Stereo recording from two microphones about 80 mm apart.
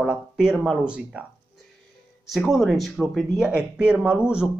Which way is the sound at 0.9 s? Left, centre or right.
Centre.